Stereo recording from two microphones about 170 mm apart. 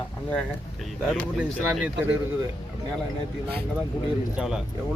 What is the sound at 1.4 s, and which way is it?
Speech, 5° right (ahead or behind).